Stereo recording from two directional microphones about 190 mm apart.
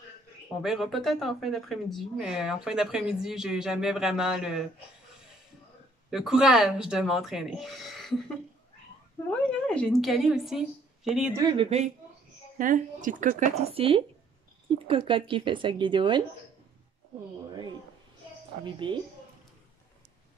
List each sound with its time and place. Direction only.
0.6 s speech: centre (ahead or behind)
6.0 s speech: centre (ahead or behind)
9.7 s speech: 5° left (ahead or behind)
11.3 s a woman's voice: 25° right (ahead or behind)
12.5 s a woman's voice: 45° right (ahead or behind); by 16.2 s 25° right (ahead or behind)
18.8 s a woman's voice: 25° right (ahead or behind)